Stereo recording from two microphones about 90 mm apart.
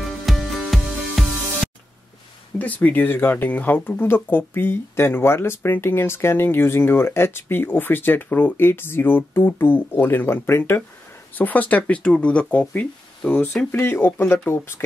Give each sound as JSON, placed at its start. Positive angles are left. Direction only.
{"t": 0.2, "sound": "music", "side_deg": 0}
{"t": 2.6, "sound": "speech", "side_deg": 15}